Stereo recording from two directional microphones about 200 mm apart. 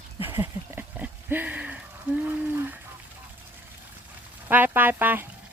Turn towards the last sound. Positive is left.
turn(degrees=-10)  # may be behind; listen again after turning